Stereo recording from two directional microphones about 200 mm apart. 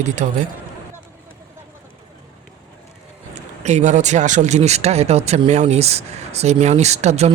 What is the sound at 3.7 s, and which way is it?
Speech, 35° right (ahead or behind).